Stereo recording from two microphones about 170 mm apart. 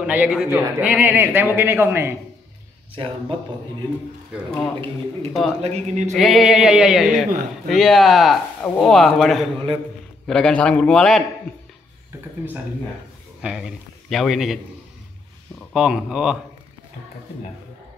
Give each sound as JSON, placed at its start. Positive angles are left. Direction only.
{"t": 0.0, "sound": "a man's voice", "side_deg": -5}
{"t": 3.0, "sound": "a man's voice", "side_deg": -30}
{"t": 4.5, "sound": "speech", "side_deg": 10}
{"t": 5.6, "sound": "a man's voice", "side_deg": -40}
{"t": 6.1, "sound": "a sound", "side_deg": 0}
{"t": 13.4, "sound": "speech", "side_deg": -5}
{"t": 15.7, "sound": "a sound", "side_deg": -5}